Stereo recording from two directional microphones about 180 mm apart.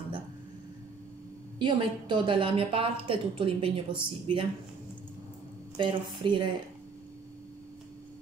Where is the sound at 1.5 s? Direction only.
25° right (ahead or behind).